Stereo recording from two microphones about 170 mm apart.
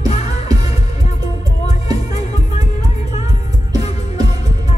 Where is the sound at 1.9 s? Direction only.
40° left (ahead or behind).